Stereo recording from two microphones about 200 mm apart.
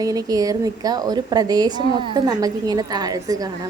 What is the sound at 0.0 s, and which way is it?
A woman's voice, 20° right (ahead or behind).